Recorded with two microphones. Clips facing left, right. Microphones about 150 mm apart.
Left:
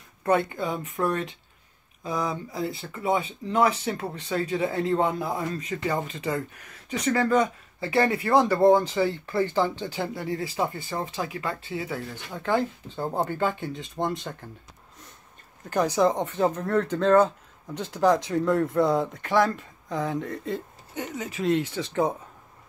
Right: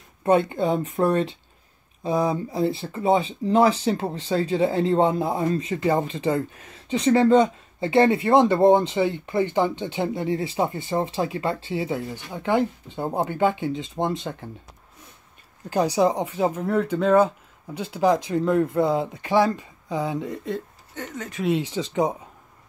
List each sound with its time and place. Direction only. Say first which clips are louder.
0.2 s speech: right 4 dB; 25° right (ahead or behind)
12.3 s speech: right 3 dB; 15° right (ahead or behind)
15.7 s speech: right 2 dB; 15° right (ahead or behind)
20.9 s speech: left 1 dB; 10° left (ahead or behind)
21.5 s speech: right 1 dB; 15° right (ahead or behind)